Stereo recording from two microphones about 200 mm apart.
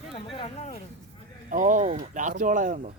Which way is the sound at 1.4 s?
40° right (ahead or behind).